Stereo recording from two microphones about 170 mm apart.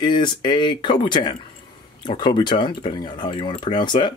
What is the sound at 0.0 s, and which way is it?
Speech, 25° left (ahead or behind).